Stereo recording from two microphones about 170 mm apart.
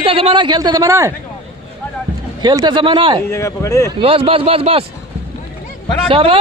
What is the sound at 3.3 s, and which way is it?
Speech, 15° left (ahead or behind).